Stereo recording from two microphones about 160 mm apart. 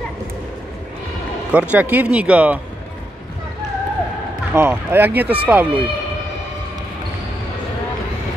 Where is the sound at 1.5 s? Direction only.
10° right (ahead or behind).